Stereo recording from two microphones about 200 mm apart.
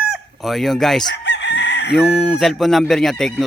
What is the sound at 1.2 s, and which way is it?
Chicken, 60° left (ahead or behind).